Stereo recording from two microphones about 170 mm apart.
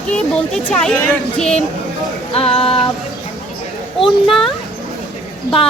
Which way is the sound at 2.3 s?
35° left (ahead or behind).